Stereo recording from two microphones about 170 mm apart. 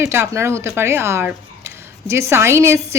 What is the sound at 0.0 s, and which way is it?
A woman's voice, 15° right (ahead or behind).